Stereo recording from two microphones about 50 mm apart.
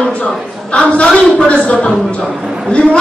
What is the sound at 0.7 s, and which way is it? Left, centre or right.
A woman's voice, left.